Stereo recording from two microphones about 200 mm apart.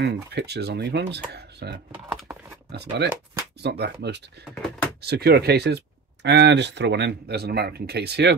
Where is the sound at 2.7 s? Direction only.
55° right (ahead or behind).